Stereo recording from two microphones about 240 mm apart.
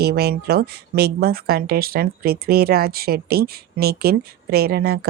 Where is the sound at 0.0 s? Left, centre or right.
Right.